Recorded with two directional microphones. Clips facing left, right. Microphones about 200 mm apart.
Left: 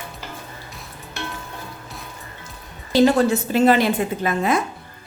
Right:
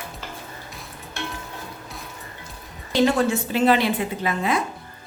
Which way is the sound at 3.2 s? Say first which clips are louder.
Left 3 dB; 40° left (ahead or behind).